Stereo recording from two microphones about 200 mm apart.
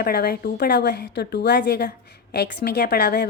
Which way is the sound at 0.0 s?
50° left (ahead or behind).